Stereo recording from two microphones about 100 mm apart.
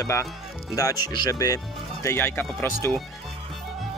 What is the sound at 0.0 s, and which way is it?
Speech, 30° left (ahead or behind).